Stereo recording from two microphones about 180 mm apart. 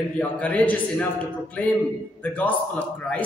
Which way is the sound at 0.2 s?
10° left (ahead or behind).